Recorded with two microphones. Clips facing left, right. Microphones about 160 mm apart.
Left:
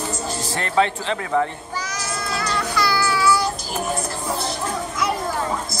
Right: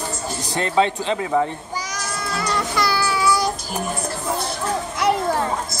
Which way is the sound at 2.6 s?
20° right (ahead or behind).